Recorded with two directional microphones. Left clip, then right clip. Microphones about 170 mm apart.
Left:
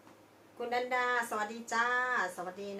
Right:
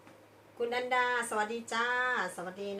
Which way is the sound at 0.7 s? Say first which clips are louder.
Right 1 dB; centre (ahead or behind).